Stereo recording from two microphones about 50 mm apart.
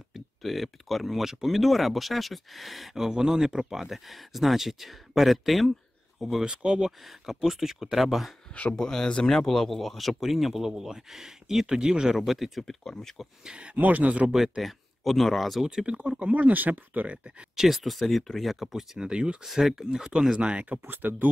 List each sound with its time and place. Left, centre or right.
0.1 s speech: centre
6.4 s speech: centre
7.4 s speech: centre
8.7 s speech: centre
12.6 s speech: centre
13.4 s speech: centre
13.7 s speech: right
14.6 s speech: centre
15.6 s speech: centre
16.2 s speech: right
17.6 s speech: centre
19.4 s speech: centre; by 20.8 s right
20.8 s speech: right